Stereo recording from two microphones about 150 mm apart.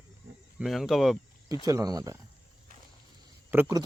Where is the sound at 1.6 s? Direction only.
25° right (ahead or behind).